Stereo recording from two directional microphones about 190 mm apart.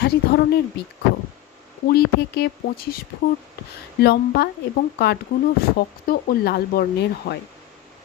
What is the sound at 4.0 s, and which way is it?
Speech, 60° left (ahead or behind).